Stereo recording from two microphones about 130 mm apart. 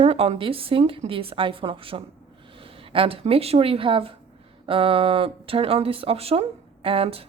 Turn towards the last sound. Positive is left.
turn(degrees=-45)  # may be behind; listen again after turning